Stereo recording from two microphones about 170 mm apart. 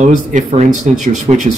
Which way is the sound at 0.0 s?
45° right (ahead or behind).